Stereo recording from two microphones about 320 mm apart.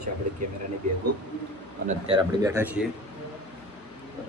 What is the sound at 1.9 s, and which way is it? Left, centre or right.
Speech, centre.